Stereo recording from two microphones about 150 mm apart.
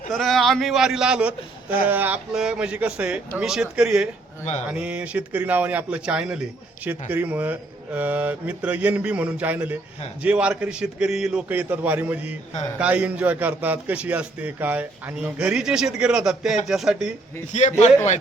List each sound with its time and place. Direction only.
0.1 s a man's voice: centre (ahead or behind)
17.5 s a man's voice: 50° left (ahead or behind)